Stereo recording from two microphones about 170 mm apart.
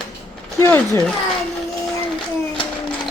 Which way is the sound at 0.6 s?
10° left (ahead or behind).